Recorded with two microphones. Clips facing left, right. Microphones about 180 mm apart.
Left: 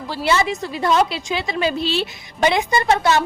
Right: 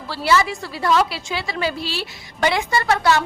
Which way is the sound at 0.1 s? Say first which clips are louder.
Even; 25° left (ahead or behind).